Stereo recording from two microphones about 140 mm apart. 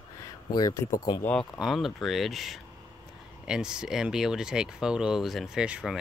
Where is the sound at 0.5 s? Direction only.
30° left (ahead or behind).